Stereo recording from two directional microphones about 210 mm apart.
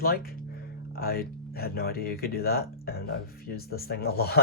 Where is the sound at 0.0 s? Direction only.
45° left (ahead or behind).